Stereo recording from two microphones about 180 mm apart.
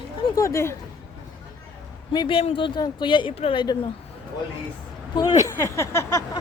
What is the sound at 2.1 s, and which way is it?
Speech, 25° left (ahead or behind).